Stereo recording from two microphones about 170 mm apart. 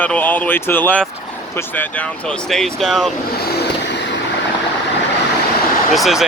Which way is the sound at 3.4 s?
70° left (ahead or behind).